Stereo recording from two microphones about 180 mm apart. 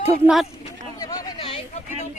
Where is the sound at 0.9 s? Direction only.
20° left (ahead or behind).